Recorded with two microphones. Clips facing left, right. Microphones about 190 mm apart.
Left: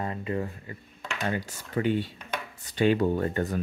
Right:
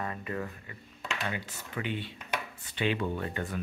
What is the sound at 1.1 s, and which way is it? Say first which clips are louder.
Speech: left 7 dB; 45° left (ahead or behind).